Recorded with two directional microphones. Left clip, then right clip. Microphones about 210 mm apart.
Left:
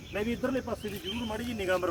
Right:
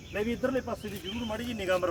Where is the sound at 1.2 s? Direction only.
40° right (ahead or behind).